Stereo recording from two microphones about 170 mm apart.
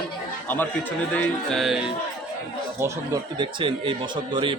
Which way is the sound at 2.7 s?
20° right (ahead or behind).